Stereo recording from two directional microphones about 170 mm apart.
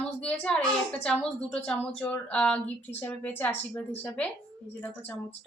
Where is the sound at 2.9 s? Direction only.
10° left (ahead or behind).